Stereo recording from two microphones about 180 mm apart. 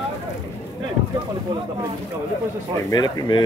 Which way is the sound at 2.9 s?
20° left (ahead or behind).